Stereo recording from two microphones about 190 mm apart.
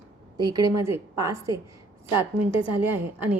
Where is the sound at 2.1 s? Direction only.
25° left (ahead or behind).